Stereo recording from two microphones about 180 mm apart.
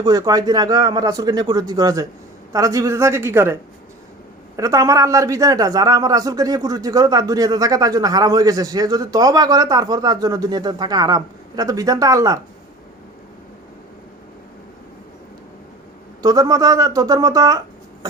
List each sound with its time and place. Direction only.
0.0 s a man's voice: 20° right (ahead or behind)
16.2 s a man's voice: 20° right (ahead or behind)